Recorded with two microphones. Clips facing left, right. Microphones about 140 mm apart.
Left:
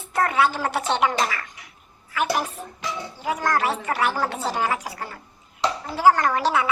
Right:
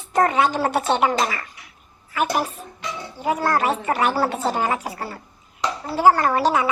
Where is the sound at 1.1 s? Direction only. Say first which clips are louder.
Right 2 dB; 15° right (ahead or behind).